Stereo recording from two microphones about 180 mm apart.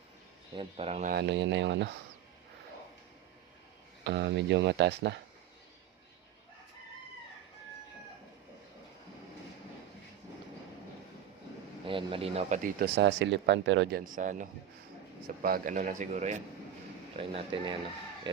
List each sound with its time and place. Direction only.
0.5 s speech: 30° right (ahead or behind)
1.0 s speech: 65° right (ahead or behind); by 1.9 s 85° right
4.0 s speech: 75° right (ahead or behind)
11.9 s speech: 30° right (ahead or behind)
12.6 s speech: 65° right (ahead or behind); by 14.0 s 85° right
14.0 s a man's voice: 45° right (ahead or behind)
17.2 s speech: 30° right (ahead or behind)